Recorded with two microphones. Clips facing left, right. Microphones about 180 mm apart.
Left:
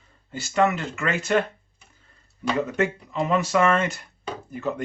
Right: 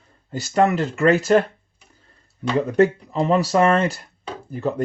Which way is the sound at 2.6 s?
35° right (ahead or behind).